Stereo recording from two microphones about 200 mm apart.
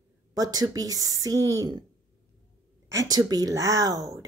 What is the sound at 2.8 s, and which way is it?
Speech, 15° right (ahead or behind).